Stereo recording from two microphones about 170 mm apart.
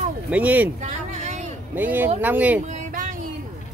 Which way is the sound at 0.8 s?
45° right (ahead or behind).